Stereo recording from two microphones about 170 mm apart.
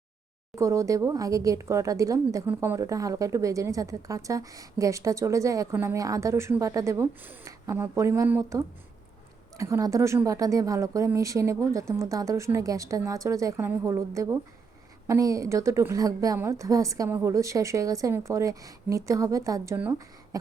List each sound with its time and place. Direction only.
0.5 s speech: 15° right (ahead or behind)